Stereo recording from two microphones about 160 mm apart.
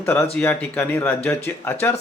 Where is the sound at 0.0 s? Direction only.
15° left (ahead or behind).